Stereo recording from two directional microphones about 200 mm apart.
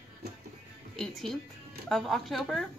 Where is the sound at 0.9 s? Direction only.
Centre (ahead or behind).